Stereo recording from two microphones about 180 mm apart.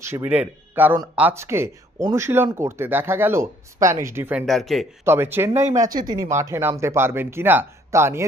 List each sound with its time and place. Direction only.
0.0 s speech: 10° right (ahead or behind)
5.0 s speech: 10° right (ahead or behind)